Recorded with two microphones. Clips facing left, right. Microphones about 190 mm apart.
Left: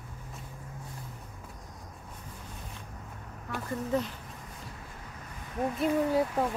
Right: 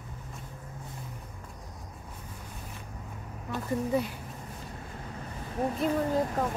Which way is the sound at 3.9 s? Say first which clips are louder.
Left 1 dB; 10° right (ahead or behind).